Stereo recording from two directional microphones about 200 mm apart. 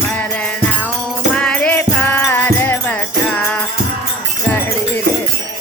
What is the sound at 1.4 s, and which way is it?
Music, 5° left (ahead or behind).